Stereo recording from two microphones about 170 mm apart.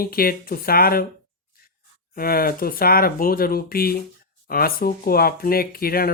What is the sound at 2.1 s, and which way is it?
Speech, 60° left (ahead or behind).